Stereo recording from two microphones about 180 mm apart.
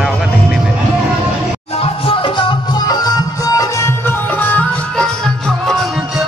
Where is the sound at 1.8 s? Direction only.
30° left (ahead or behind).